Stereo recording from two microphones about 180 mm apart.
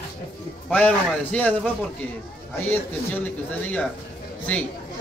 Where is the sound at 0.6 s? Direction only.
10° left (ahead or behind).